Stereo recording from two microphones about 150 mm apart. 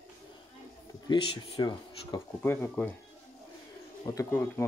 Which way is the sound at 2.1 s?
15° left (ahead or behind).